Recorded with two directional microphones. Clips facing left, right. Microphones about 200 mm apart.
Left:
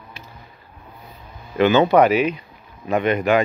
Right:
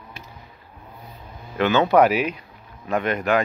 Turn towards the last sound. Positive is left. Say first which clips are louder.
# left 3 dB
turn(degrees=0)  # may be behind; listen again after turning